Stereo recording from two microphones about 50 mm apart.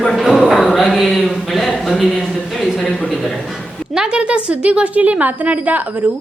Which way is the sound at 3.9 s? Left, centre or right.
Centre.